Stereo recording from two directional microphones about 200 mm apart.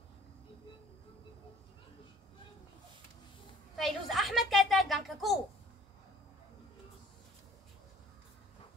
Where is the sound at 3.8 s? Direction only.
Centre (ahead or behind).